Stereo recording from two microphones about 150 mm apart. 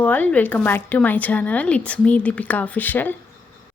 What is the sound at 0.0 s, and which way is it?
Speech, 10° left (ahead or behind).